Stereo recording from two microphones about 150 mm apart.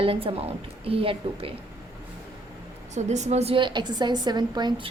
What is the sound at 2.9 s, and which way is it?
A woman's voice, 50° right (ahead or behind).